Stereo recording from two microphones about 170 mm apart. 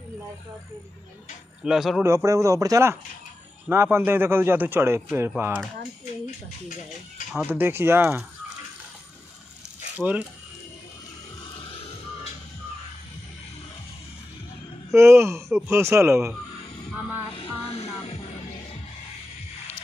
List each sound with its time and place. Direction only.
1.6 s speech: centre (ahead or behind)
2.0 s a man's voice: 20° right (ahead or behind)
7.3 s a man's voice: 10° right (ahead or behind)
9.9 s speech: 10° right (ahead or behind)
11.6 s music: 30° left (ahead or behind)
14.9 s a man's voice: 15° right (ahead or behind)
17.6 s music: 35° left (ahead or behind)